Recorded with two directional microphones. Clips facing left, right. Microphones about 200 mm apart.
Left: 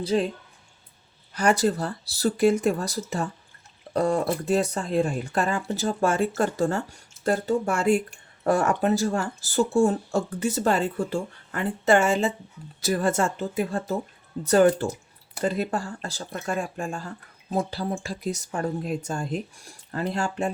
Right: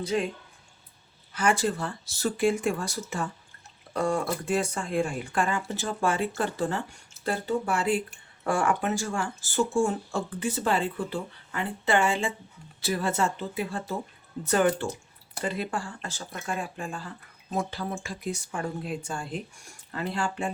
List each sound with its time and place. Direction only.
0.0 s speech: 30° left (ahead or behind)
1.3 s speech: 40° left (ahead or behind)